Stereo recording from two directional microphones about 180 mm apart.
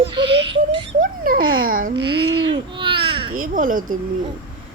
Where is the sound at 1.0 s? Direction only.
50° right (ahead or behind).